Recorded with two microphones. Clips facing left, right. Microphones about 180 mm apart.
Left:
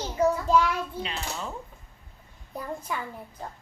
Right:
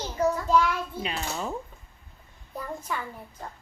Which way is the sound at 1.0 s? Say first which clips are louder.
Right 3 dB; 10° right (ahead or behind).